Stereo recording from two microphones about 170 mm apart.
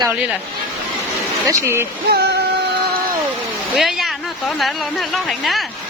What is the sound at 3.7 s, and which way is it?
Speech, centre (ahead or behind).